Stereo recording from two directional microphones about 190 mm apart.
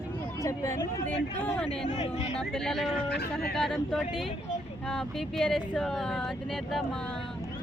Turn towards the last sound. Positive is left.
turn(degrees=0)  # may be behind; listen again after turning